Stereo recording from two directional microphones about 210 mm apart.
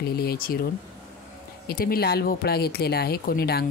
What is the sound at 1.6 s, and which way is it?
Speech, 45° left (ahead or behind).